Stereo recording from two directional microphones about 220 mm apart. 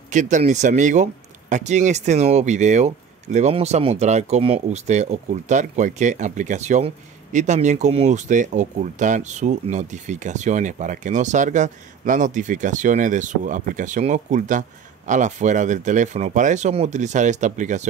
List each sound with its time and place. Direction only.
0.1 s speech: 35° right (ahead or behind)